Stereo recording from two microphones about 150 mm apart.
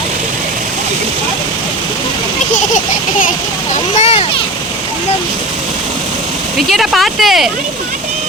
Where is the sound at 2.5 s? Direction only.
55° left (ahead or behind).